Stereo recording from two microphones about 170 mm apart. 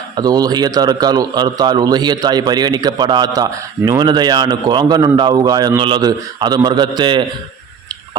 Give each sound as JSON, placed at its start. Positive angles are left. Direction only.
{"t": 0.2, "sound": "a man's voice", "side_deg": -20}